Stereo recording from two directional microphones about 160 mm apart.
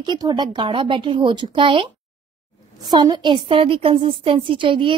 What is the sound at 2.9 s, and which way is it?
A woman's voice, 25° right (ahead or behind).